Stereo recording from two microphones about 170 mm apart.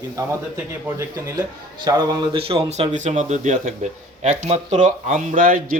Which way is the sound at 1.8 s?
25° right (ahead or behind).